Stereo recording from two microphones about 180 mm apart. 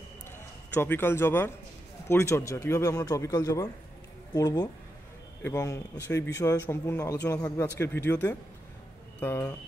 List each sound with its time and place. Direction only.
0.7 s speech: 10° left (ahead or behind)